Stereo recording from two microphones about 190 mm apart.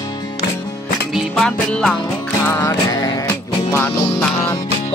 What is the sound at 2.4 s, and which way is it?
Music, 15° left (ahead or behind).